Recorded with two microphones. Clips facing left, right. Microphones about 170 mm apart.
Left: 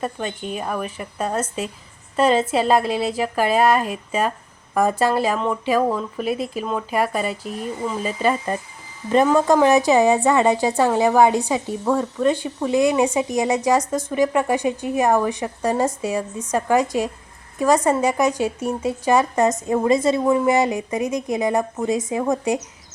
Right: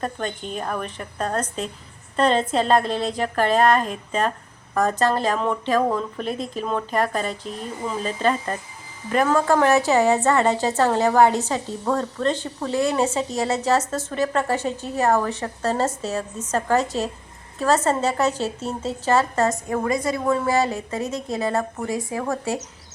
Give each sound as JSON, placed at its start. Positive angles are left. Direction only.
{"t": 0.0, "sound": "a woman's voice", "side_deg": 5}